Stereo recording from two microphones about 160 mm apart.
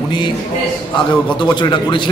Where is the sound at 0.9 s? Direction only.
30° left (ahead or behind).